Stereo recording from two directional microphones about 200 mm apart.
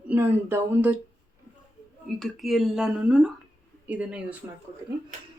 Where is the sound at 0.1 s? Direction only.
10° right (ahead or behind).